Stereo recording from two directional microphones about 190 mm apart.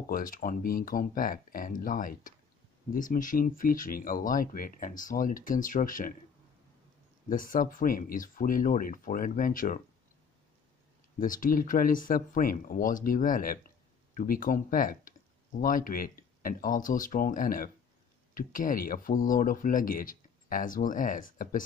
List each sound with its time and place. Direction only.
0.1 s speech: 45° left (ahead or behind)
7.2 s speech: 45° left (ahead or behind)
11.1 s speech: 45° left (ahead or behind)